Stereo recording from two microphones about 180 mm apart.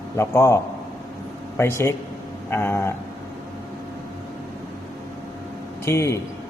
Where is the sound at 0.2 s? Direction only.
15° left (ahead or behind).